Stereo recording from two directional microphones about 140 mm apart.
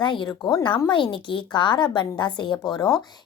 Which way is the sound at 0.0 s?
35° left (ahead or behind).